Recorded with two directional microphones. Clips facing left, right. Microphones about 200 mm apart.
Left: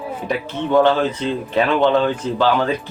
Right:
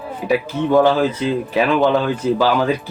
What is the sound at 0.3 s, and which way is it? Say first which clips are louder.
Speech: right 4 dB; 5° right (ahead or behind).